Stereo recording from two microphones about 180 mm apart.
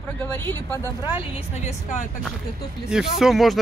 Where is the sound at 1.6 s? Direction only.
40° left (ahead or behind).